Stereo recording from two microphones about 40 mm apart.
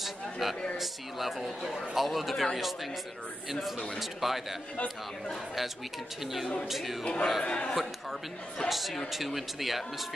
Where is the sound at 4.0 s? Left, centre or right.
Centre.